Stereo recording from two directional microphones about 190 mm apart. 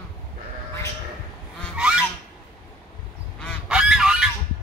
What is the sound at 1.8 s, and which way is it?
Goose, 5° right (ahead or behind).